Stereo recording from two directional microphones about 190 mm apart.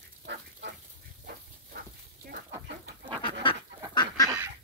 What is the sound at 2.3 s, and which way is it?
Chicken, 60° right (ahead or behind).